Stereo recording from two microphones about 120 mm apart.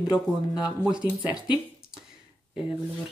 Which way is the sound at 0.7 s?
5° right (ahead or behind).